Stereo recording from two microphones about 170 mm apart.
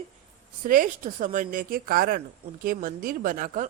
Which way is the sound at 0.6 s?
50° right (ahead or behind).